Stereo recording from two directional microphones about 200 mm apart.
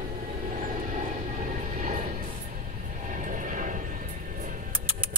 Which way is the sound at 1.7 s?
45° right (ahead or behind).